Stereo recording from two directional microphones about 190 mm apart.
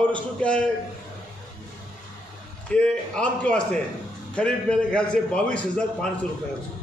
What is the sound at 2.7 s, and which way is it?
A man's voice, 5° left (ahead or behind).